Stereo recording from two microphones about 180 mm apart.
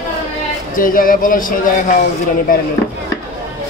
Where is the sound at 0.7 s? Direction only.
50° left (ahead or behind).